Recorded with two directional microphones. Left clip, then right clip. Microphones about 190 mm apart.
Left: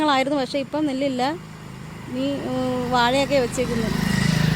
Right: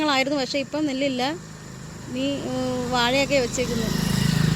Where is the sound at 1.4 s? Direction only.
35° left (ahead or behind).